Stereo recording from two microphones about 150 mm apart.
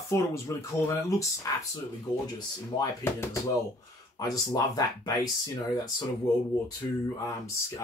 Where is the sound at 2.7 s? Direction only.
20° left (ahead or behind).